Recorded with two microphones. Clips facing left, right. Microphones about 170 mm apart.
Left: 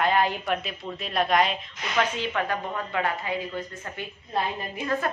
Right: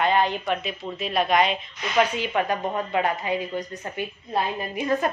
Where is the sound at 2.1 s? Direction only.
15° right (ahead or behind).